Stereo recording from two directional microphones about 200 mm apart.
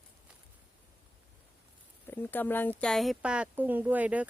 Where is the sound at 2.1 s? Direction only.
10° left (ahead or behind).